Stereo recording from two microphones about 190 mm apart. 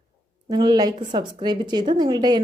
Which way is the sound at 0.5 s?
25° right (ahead or behind).